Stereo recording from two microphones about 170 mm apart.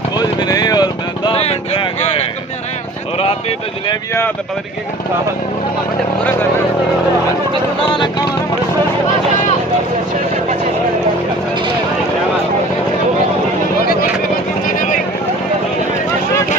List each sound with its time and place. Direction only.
0.2 s vehicle: 25° left (ahead or behind)